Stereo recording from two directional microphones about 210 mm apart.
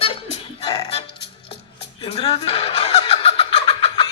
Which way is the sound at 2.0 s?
30° left (ahead or behind).